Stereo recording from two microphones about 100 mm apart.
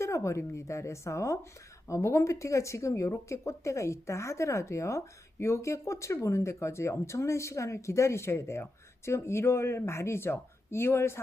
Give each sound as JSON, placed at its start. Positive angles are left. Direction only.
{"t": 0.0, "sound": "speech", "side_deg": 30}